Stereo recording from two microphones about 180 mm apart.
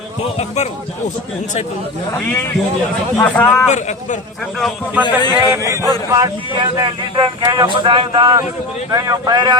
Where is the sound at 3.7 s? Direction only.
40° left (ahead or behind).